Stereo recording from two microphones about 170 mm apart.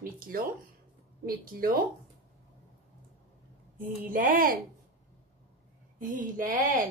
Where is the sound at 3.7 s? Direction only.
55° right (ahead or behind).